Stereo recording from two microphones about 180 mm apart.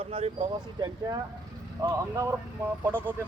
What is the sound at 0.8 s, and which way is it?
Speech, 20° right (ahead or behind).